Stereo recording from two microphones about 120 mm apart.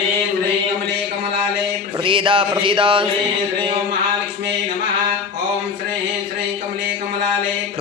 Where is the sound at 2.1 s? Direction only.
45° right (ahead or behind).